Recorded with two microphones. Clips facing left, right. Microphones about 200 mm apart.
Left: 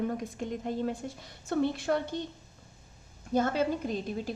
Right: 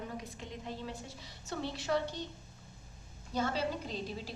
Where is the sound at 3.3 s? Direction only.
50° left (ahead or behind).